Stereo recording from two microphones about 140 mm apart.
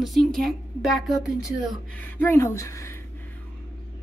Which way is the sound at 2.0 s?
15° left (ahead or behind).